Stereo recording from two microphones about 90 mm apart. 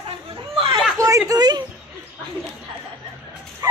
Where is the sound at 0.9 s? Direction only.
35° right (ahead or behind).